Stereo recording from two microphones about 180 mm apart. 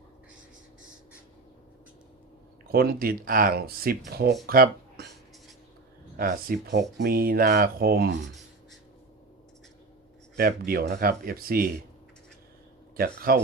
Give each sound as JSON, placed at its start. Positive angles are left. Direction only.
{"t": 2.7, "sound": "speech", "side_deg": -55}
{"t": 6.1, "sound": "speech", "side_deg": -55}
{"t": 10.3, "sound": "speech", "side_deg": -55}
{"t": 13.3, "sound": "speech", "side_deg": -55}